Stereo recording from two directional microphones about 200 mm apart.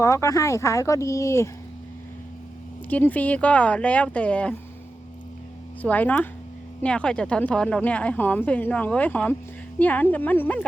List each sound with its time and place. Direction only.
0.0 s a woman's voice: 15° left (ahead or behind)
2.9 s a woman's voice: 10° left (ahead or behind)
5.8 s a woman's voice: 10° left (ahead or behind)